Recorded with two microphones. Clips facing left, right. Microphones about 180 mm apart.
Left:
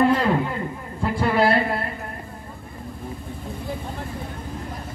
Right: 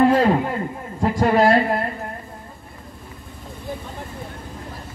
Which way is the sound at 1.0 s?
40° right (ahead or behind).